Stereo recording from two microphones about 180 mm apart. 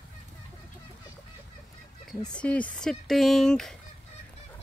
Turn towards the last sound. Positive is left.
turn(degrees=5)  # may be behind; listen again after turning